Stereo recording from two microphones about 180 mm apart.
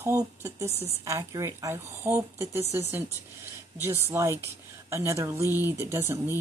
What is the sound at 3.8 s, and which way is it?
Speech, 15° right (ahead or behind).